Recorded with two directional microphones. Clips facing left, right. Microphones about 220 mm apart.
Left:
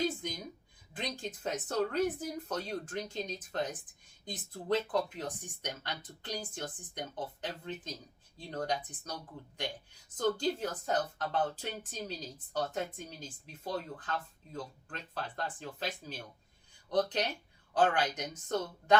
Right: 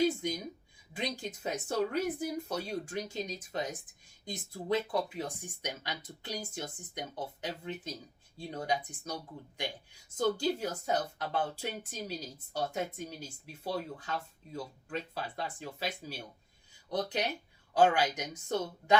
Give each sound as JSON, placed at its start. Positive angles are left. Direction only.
{"t": 0.9, "sound": "speech", "side_deg": -10}
{"t": 10.2, "sound": "speech", "side_deg": -10}